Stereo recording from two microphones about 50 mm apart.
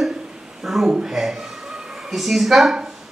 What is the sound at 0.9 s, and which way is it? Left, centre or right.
Speech, centre.